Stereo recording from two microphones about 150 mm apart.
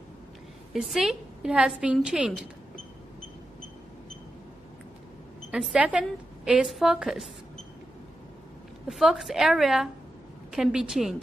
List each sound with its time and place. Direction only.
0.7 s a woman's voice: centre (ahead or behind)
5.5 s a woman's voice: 5° right (ahead or behind)
8.8 s a woman's voice: 5° right (ahead or behind)